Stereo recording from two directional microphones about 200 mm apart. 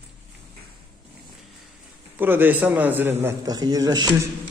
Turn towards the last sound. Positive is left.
turn(degrees=-20)  # may be behind; listen again after turning